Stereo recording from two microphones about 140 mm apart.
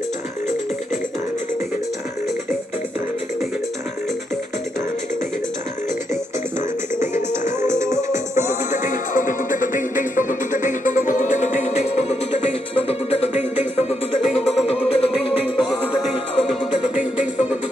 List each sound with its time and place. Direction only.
7.6 s music: 20° right (ahead or behind)
8.8 s music: 70° left (ahead or behind); by 15.3 s 45° left (ahead or behind)
16.4 s music: 5° right (ahead or behind)